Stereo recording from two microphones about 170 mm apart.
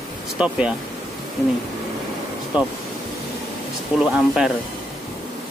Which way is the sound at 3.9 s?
5° right (ahead or behind).